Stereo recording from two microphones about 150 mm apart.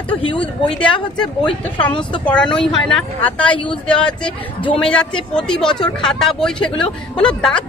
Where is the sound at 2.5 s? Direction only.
35° left (ahead or behind).